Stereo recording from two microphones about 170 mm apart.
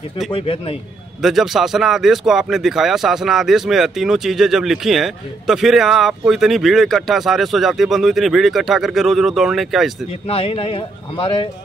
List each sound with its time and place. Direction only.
0.3 s speech: 35° left (ahead or behind)
1.2 s speech: centre (ahead or behind)
10.2 s speech: 35° left (ahead or behind)